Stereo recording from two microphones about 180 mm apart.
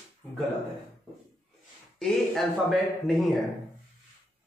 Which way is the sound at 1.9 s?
Centre (ahead or behind).